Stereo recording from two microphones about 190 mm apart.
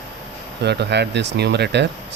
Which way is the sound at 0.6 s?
60° right (ahead or behind).